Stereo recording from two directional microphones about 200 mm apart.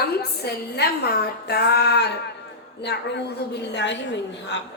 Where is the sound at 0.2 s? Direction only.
55° left (ahead or behind).